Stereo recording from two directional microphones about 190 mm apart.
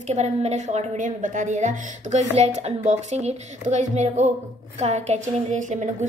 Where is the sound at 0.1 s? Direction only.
35° right (ahead or behind).